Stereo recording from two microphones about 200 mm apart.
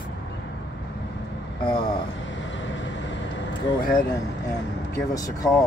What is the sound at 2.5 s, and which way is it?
Vehicle, 65° left (ahead or behind).